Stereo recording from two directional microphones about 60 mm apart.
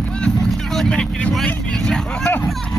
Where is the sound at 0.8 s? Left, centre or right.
Centre.